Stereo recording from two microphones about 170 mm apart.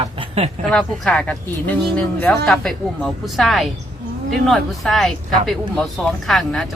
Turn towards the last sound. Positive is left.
turn(degrees=0)  # may be behind; listen again after turning